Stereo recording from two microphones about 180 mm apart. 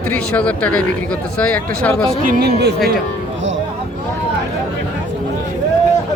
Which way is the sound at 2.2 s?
60° right (ahead or behind).